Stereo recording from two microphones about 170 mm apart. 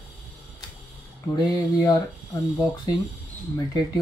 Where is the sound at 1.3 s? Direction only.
20° left (ahead or behind).